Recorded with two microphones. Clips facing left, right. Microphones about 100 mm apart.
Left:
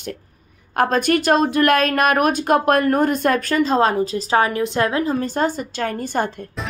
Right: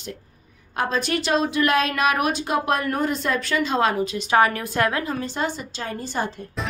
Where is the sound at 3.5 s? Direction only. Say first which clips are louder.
Left 2 dB; 35° left (ahead or behind).